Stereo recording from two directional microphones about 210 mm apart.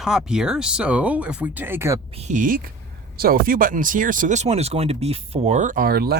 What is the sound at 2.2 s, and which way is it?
Speech, 35° right (ahead or behind).